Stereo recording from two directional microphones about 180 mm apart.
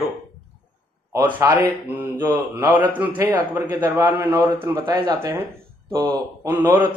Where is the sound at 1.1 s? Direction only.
10° right (ahead or behind).